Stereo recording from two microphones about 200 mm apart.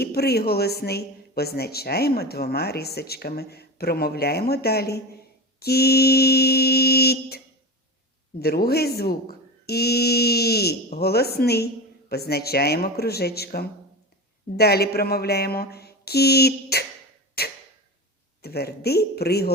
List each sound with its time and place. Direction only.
0.0 s speech: 50° left (ahead or behind)
17.4 s a sound: 50° left (ahead or behind)
18.4 s speech: 50° left (ahead or behind)